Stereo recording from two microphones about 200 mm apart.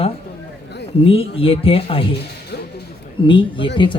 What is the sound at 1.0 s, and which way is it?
Speech, 30° left (ahead or behind).